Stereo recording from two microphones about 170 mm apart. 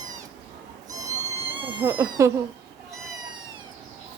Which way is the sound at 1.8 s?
15° right (ahead or behind).